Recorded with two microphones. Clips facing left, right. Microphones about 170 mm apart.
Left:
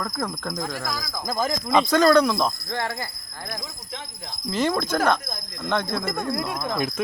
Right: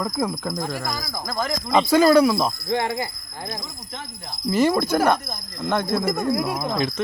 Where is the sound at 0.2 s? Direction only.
5° right (ahead or behind).